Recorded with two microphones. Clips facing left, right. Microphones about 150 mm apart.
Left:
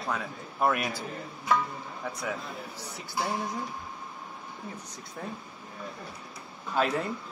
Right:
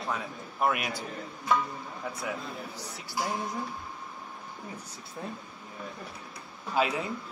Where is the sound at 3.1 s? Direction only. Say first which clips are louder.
Left 1 dB; 20° left (ahead or behind).